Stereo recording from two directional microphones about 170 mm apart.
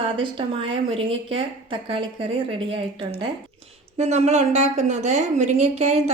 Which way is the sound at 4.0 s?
40° right (ahead or behind).